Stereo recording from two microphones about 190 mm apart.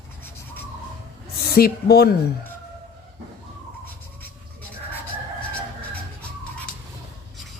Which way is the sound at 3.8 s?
10° left (ahead or behind).